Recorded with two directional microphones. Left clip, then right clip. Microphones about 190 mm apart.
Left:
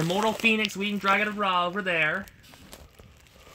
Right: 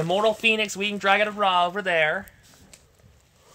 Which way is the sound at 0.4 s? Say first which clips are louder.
Right 2 dB; 60° right (ahead or behind).